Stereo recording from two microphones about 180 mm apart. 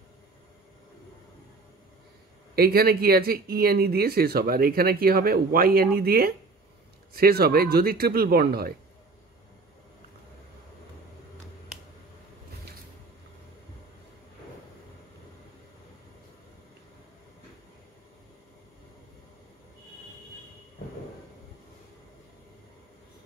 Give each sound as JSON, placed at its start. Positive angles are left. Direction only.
{"t": 2.5, "sound": "speech", "side_deg": -60}